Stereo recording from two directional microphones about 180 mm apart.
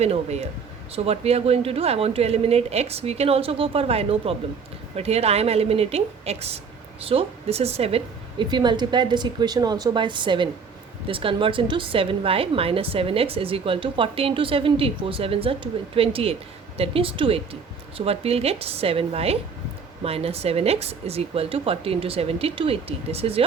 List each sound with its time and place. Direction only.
0.0 s a woman's voice: 35° right (ahead or behind)